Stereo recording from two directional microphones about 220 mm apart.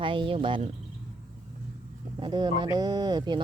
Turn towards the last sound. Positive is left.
turn(degrees=-20)  # may be behind; listen again after turning